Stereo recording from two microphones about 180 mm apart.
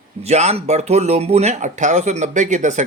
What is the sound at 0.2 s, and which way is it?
Speech, 35° right (ahead or behind).